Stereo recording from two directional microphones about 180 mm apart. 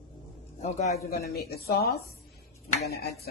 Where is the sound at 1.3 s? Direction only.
60° left (ahead or behind).